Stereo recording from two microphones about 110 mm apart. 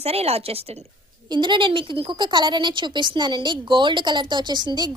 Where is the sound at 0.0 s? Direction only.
65° right (ahead or behind).